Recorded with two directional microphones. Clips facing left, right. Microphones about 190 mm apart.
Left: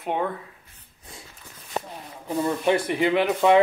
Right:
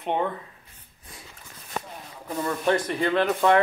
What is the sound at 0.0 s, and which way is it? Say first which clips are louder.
Speech: even; 5° left (ahead or behind).